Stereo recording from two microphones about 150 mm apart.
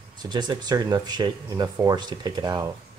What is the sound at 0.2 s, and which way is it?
Speech, 30° right (ahead or behind).